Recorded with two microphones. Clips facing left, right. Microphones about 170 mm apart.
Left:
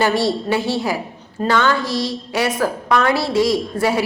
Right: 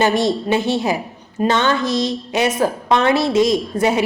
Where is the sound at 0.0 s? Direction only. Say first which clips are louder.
Right 1 dB; 20° right (ahead or behind).